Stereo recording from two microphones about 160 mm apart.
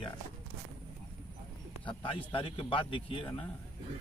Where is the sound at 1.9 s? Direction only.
35° left (ahead or behind).